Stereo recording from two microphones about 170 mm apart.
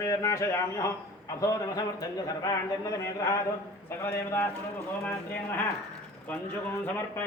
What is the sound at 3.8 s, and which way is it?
Speech, 15° left (ahead or behind).